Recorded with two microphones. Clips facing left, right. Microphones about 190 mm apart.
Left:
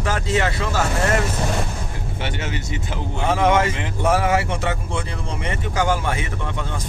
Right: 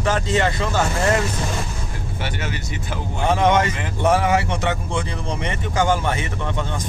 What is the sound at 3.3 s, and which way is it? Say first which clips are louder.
Speech: even; 5° left (ahead or behind).